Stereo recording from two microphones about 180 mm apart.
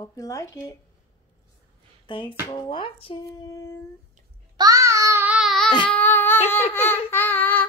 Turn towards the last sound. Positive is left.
turn(degrees=10)  # may be behind; listen again after turning